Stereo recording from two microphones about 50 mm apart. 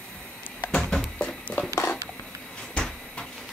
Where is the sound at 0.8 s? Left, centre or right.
Centre.